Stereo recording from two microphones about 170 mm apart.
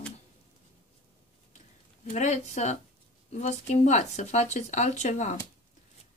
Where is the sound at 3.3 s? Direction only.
40° left (ahead or behind).